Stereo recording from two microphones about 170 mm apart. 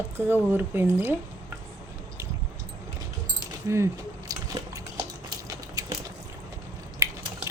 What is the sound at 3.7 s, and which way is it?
Speech, 15° right (ahead or behind).